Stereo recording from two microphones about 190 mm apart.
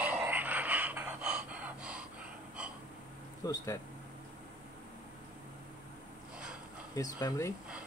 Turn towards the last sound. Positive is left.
turn(degrees=15)  # may be behind; listen again after turning